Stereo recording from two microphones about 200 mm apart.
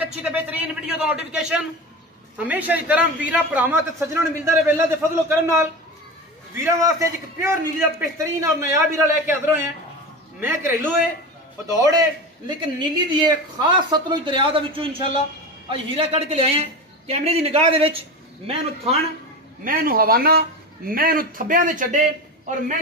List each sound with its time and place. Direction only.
0.0 s a man's voice: 5° right (ahead or behind); by 17.9 s 30° right (ahead or behind)
19.6 s a man's voice: 45° right (ahead or behind)